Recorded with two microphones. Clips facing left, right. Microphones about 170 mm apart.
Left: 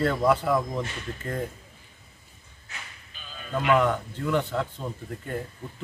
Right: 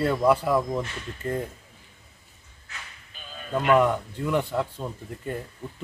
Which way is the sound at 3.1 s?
45° right (ahead or behind).